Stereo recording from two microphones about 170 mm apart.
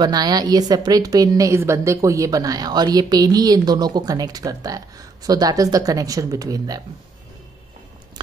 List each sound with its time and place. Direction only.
0.0 s a woman's voice: 25° right (ahead or behind)